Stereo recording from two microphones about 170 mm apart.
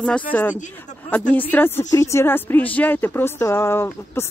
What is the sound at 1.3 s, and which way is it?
Speech, 10° left (ahead or behind).